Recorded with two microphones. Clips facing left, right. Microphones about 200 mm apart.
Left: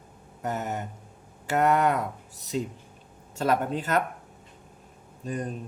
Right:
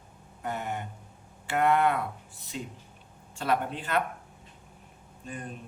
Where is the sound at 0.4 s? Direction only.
40° left (ahead or behind).